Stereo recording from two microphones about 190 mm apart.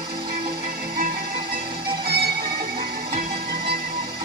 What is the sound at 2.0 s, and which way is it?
Music, 55° right (ahead or behind).